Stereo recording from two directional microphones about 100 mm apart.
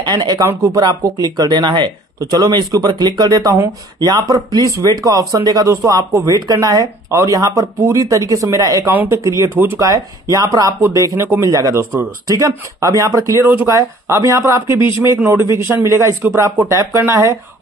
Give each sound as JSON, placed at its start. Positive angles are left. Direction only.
{"t": 0.0, "sound": "speech", "side_deg": -45}
{"t": 0.5, "sound": "speech", "side_deg": -35}
{"t": 2.1, "sound": "speech", "side_deg": -35}
{"t": 8.9, "sound": "speech", "side_deg": -25}
{"t": 11.5, "sound": "speech", "side_deg": -35}